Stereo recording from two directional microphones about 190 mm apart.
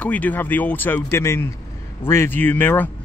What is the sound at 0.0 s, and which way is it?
Speech, 10° left (ahead or behind).